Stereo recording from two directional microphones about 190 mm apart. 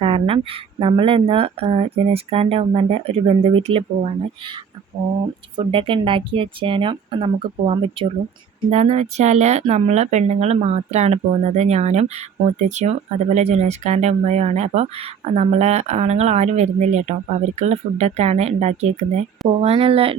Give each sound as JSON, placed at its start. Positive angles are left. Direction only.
{"t": 0.0, "sound": "speech", "side_deg": -30}